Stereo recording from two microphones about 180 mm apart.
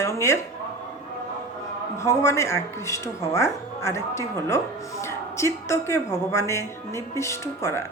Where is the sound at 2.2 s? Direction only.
15° left (ahead or behind).